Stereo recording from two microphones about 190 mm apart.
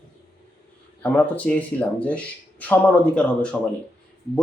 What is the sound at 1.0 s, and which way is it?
Speech, 10° left (ahead or behind).